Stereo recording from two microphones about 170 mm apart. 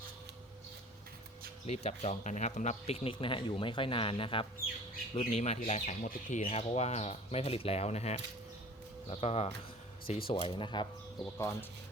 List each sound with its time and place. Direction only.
1.6 s speech: 40° left (ahead or behind)
6.4 s speech: 35° left (ahead or behind)